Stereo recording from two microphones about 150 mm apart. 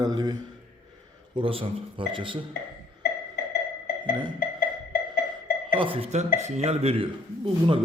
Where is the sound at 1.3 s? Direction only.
35° right (ahead or behind).